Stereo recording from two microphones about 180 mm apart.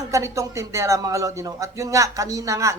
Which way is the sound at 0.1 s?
15° right (ahead or behind).